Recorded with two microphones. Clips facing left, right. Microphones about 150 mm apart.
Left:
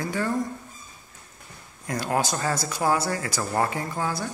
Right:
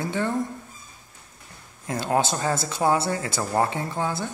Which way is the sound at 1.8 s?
25° right (ahead or behind).